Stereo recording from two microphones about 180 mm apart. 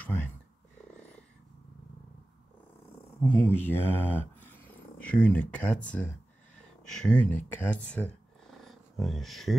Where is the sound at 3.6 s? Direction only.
10° left (ahead or behind).